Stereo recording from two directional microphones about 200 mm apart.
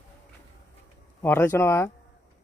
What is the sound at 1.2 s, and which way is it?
Speech, 10° left (ahead or behind).